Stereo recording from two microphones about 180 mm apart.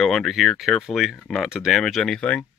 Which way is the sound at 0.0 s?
Centre (ahead or behind).